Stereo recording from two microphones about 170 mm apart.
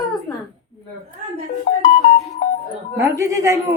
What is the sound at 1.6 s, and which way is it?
Music, 45° left (ahead or behind).